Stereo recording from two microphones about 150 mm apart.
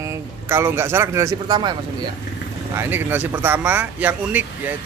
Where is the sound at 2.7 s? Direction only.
15° right (ahead or behind).